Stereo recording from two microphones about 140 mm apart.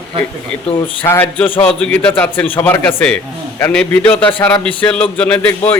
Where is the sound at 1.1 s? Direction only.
15° left (ahead or behind).